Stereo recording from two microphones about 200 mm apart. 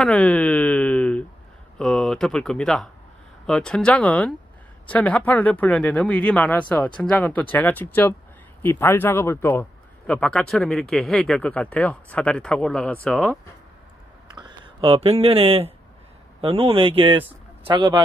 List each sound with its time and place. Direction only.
0.0 s a sound: 5° left (ahead or behind)
1.8 s speech: 5° left (ahead or behind)
14.3 s speech: 20° right (ahead or behind)